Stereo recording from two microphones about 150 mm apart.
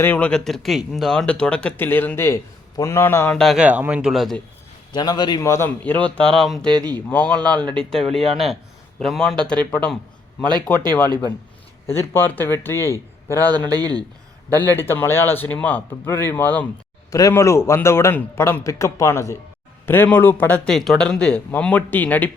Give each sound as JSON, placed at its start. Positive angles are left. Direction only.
{"t": 0.0, "sound": "speech", "side_deg": 10}
{"t": 3.3, "sound": "a man's voice", "side_deg": 0}
{"t": 4.9, "sound": "a man's voice", "side_deg": 25}
{"t": 11.9, "sound": "speech", "side_deg": 15}
{"t": 13.7, "sound": "a man's voice", "side_deg": -25}
{"t": 14.5, "sound": "a man's voice", "side_deg": 15}
{"t": 20.7, "sound": "speech", "side_deg": 0}